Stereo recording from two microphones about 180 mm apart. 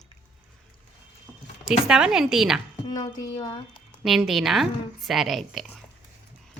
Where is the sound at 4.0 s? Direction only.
Centre (ahead or behind).